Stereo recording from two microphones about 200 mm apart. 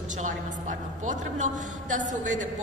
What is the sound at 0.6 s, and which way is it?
A woman's voice, 40° right (ahead or behind).